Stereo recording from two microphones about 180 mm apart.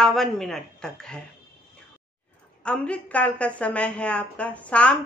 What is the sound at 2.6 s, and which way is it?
A woman's voice, 5° left (ahead or behind).